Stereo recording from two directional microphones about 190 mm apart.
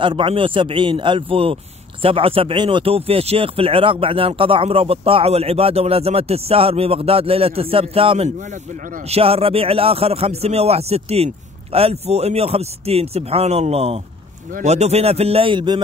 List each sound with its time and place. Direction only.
0.0 s speech: 25° right (ahead or behind)